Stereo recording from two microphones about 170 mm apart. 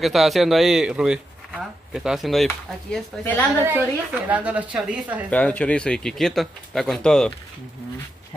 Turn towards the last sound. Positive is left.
turn(degrees=5)  # may be behind; listen again after turning